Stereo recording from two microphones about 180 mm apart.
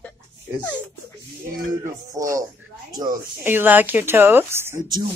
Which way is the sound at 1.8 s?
15° right (ahead or behind).